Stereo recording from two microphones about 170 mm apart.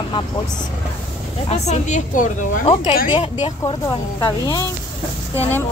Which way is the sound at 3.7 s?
25° left (ahead or behind).